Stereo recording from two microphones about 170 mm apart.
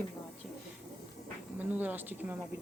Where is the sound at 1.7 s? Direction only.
10° right (ahead or behind).